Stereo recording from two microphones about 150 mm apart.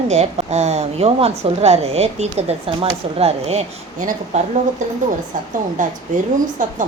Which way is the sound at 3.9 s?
60° right (ahead or behind).